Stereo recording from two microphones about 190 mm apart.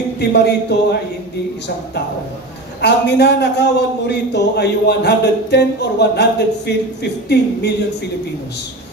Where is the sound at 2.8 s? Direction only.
60° left (ahead or behind).